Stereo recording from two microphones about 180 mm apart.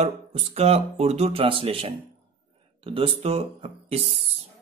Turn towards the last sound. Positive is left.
turn(degrees=-35)  # may be behind; listen again after turning